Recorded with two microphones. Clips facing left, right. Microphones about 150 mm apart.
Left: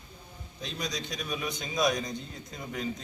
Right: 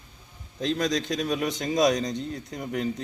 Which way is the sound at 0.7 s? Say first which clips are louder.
Right 10 dB; 90° right.